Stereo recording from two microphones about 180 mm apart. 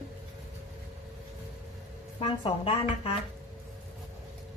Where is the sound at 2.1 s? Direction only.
30° left (ahead or behind).